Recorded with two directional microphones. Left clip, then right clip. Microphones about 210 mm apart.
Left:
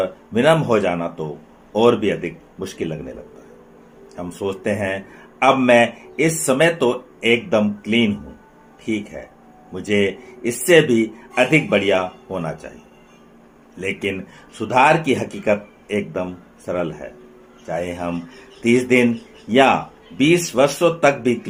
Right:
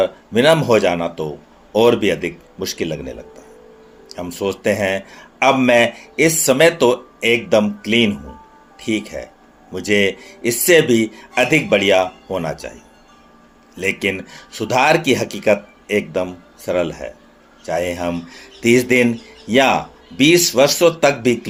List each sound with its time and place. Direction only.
0.0 s speech: 30° right (ahead or behind)
4.2 s a man's voice: 25° right (ahead or behind)
13.7 s a man's voice: 30° right (ahead or behind)